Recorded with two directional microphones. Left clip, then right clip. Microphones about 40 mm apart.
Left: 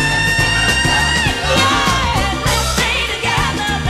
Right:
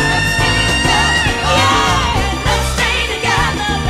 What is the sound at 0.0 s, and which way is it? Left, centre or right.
Music, right.